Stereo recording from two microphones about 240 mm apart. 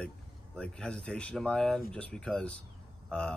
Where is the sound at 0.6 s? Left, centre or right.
Centre.